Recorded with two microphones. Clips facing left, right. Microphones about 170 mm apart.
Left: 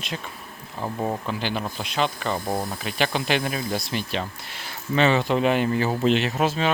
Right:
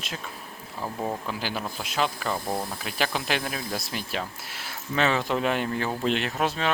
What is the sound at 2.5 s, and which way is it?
Speech, 20° left (ahead or behind).